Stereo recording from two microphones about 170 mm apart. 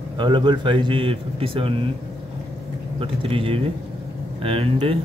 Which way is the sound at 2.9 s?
35° right (ahead or behind).